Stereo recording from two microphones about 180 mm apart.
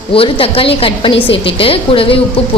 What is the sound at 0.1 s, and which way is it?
A woman's voice, 30° left (ahead or behind).